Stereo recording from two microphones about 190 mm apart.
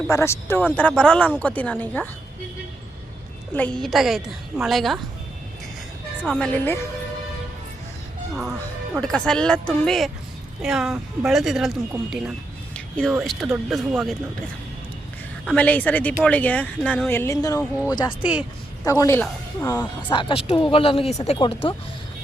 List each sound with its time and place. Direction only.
0.1 s speech: 15° left (ahead or behind)
3.5 s speech: 5° left (ahead or behind)
6.2 s speech: centre (ahead or behind)
9.0 s speech: 5° left (ahead or behind)
15.4 s speech: 5° left (ahead or behind)
18.2 s speech: 5° right (ahead or behind)
18.9 s speech: 15° left (ahead or behind)
20.1 s speech: 25° left (ahead or behind)